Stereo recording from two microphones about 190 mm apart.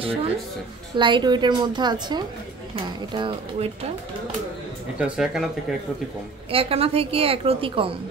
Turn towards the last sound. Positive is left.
turn(degrees=-30)  # may be behind; listen again after turning